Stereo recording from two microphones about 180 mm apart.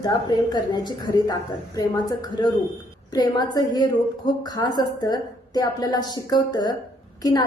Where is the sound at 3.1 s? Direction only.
25° left (ahead or behind).